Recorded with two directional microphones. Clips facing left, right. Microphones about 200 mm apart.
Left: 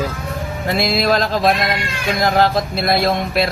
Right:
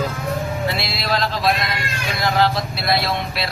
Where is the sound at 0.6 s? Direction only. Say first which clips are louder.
Left 7 dB; 45° left (ahead or behind).